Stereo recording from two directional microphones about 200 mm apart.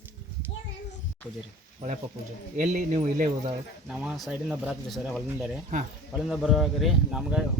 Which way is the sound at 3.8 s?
5° right (ahead or behind).